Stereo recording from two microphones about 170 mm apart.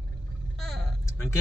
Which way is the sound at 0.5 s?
Centre (ahead or behind).